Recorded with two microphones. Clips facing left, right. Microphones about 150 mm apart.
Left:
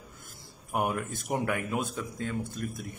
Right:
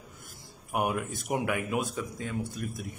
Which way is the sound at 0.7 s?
5° right (ahead or behind).